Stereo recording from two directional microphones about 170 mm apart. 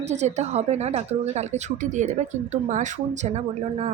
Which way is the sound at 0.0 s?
40° right (ahead or behind).